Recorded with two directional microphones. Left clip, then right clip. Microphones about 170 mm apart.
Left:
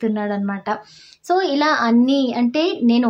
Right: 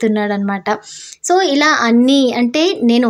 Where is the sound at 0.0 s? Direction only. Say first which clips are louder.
Right 6 dB; 25° right (ahead or behind).